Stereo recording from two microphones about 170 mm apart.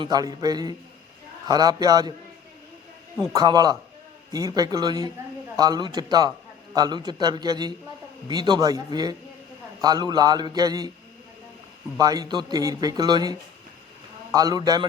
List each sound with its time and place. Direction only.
0.0 s speech: 25° right (ahead or behind)
3.3 s speech: 25° right (ahead or behind)
11.9 s speech: 20° right (ahead or behind)
14.3 s speech: 20° right (ahead or behind)